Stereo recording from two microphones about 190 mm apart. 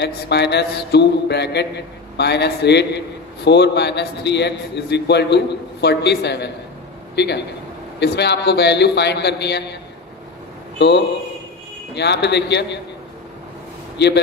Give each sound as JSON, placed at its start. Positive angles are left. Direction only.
{"t": 0.0, "sound": "a man's voice", "side_deg": 60}
{"t": 10.8, "sound": "a man's voice", "side_deg": 65}
{"t": 13.9, "sound": "speech", "side_deg": 60}